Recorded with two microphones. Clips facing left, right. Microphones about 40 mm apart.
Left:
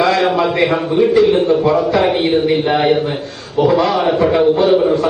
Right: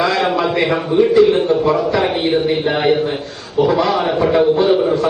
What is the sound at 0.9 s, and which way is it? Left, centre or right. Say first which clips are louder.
Speech: right 1 dB; centre.